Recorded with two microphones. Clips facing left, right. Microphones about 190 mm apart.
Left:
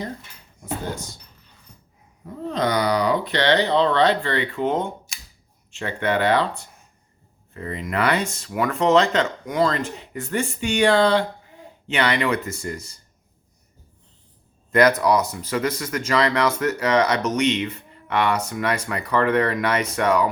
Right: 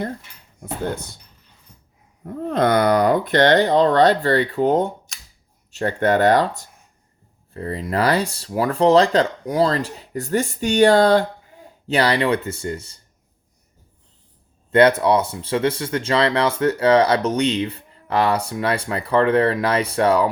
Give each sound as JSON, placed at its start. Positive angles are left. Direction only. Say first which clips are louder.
{"t": 0.6, "sound": "speech", "louder": "right 3 dB", "side_deg": -60}
{"t": 2.2, "sound": "speech", "louder": "right 5 dB", "side_deg": -55}
{"t": 14.7, "sound": "speech", "louder": "right 3 dB", "side_deg": -30}